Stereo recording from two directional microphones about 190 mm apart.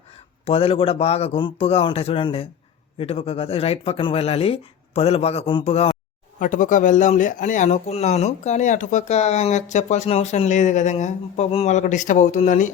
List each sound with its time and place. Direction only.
0.4 s speech: 30° left (ahead or behind)
6.4 s speech: 45° left (ahead or behind)